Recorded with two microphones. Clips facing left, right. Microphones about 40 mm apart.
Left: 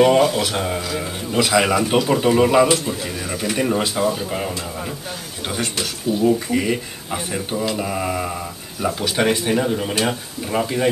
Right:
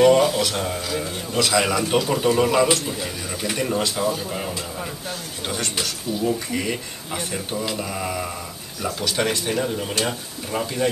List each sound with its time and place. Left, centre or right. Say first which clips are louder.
0.0 s speech: left 1 dB; centre
3.5 s speech: left 3 dB; centre